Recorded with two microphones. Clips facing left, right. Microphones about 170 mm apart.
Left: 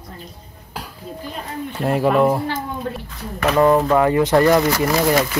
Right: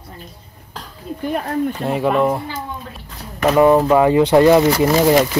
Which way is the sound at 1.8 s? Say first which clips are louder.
Left 3 dB; centre (ahead or behind).